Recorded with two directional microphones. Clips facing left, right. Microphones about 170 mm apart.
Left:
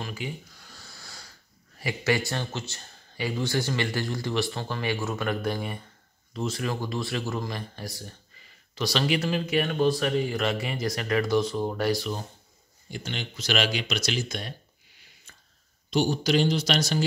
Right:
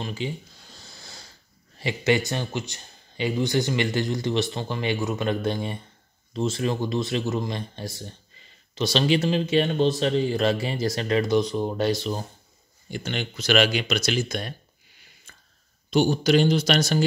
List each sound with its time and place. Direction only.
0.0 s a sound: 25° right (ahead or behind)
1.8 s speech: 25° right (ahead or behind)
12.9 s speech: 60° right (ahead or behind)
15.9 s speech: 55° right (ahead or behind)